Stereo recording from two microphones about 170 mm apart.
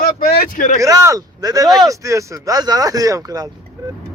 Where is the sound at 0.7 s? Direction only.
20° right (ahead or behind).